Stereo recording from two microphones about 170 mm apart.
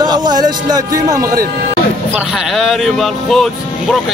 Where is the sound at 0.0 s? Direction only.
25° right (ahead or behind).